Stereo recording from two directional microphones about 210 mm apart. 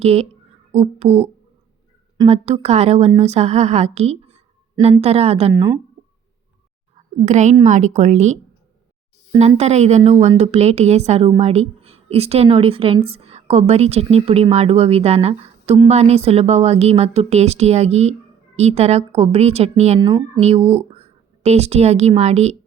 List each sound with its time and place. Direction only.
0.0 s a woman's voice: 30° right (ahead or behind)
7.3 s a woman's voice: 35° right (ahead or behind)